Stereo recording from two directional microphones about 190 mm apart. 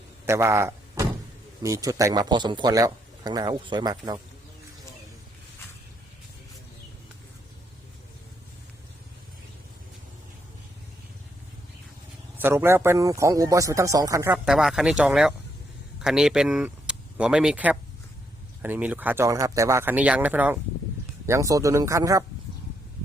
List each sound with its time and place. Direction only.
0.3 s speech: 15° right (ahead or behind)
12.4 s speech: 10° right (ahead or behind)
14.3 s speech: 5° right (ahead or behind)